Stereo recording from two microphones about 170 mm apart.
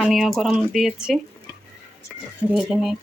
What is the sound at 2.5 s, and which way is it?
Speech, centre (ahead or behind).